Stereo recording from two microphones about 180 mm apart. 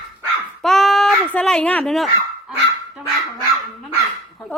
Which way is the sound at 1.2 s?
5° left (ahead or behind).